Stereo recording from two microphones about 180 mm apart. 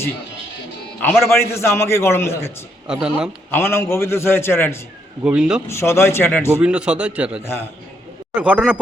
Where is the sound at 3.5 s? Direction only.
15° left (ahead or behind).